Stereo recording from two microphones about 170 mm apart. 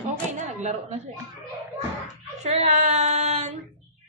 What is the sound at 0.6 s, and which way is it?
Speech, 45° right (ahead or behind).